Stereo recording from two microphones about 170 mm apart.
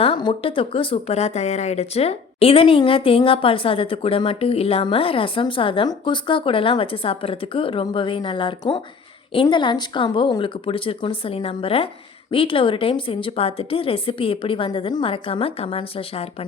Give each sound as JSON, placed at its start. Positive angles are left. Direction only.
{"t": 0.0, "sound": "speech", "side_deg": 30}